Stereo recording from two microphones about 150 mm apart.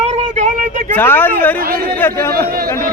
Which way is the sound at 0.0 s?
50° right (ahead or behind).